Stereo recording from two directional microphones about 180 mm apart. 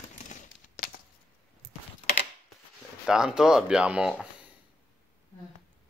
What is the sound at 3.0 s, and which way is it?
Speech, 5° right (ahead or behind).